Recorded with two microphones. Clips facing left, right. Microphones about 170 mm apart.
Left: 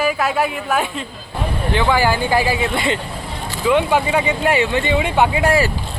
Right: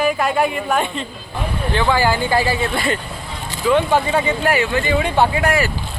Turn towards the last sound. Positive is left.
turn(degrees=30)  # may be behind; listen again after turning